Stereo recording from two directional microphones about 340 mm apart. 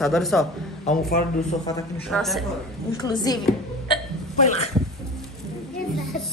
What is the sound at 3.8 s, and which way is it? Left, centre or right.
Hiccup, centre.